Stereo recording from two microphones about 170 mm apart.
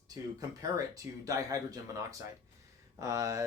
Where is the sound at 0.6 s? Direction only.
20° right (ahead or behind).